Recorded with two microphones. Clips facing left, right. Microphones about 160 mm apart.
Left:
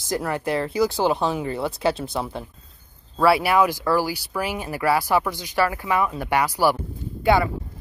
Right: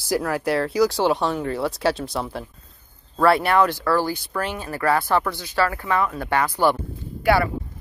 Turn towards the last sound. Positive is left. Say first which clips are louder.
# even
turn(degrees=20)  # may be behind; listen again after turning